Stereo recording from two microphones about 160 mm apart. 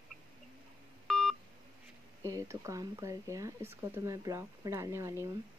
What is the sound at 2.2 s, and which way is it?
Speech, 20° right (ahead or behind).